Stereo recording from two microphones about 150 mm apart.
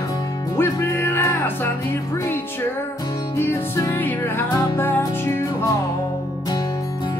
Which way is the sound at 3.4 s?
15° left (ahead or behind).